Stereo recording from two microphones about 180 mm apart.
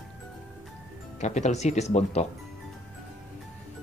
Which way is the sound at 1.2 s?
40° left (ahead or behind).